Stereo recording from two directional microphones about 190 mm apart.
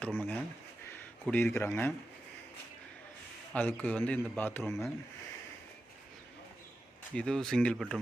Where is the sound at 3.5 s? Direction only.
10° left (ahead or behind).